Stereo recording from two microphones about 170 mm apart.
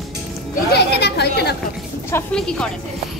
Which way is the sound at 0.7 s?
75° left (ahead or behind).